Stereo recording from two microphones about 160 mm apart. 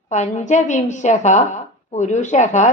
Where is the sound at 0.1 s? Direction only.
50° left (ahead or behind).